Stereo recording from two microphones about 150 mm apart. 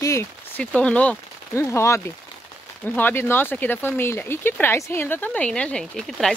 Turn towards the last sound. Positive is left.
turn(degrees=5)  # may be behind; listen again after turning